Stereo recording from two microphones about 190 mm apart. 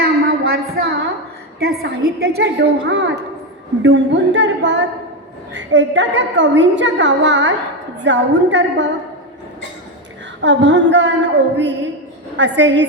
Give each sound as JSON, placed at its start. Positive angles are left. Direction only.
{"t": 0.0, "sound": "a sound", "side_deg": -55}
{"t": 1.5, "sound": "a woman's voice", "side_deg": -55}
{"t": 10.4, "sound": "a woman's voice", "side_deg": -70}